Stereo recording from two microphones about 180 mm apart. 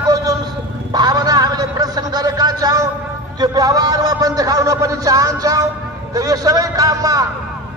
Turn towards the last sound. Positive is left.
turn(degrees=-20)  # may be behind; listen again after turning